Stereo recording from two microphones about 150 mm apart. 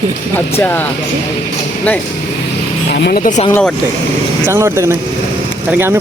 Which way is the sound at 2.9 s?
85° left.